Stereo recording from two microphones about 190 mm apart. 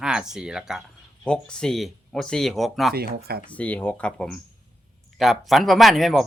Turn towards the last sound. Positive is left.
turn(degrees=0)  # may be behind; listen again after turning